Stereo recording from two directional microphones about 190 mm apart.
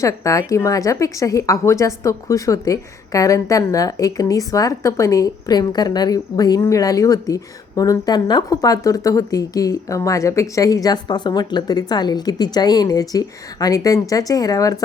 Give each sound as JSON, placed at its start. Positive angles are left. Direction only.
{"t": 0.0, "sound": "a woman's voice", "side_deg": 15}